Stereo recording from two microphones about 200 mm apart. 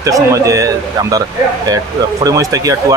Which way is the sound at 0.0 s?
15° right (ahead or behind).